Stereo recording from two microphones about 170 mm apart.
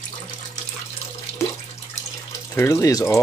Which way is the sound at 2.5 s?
15° left (ahead or behind).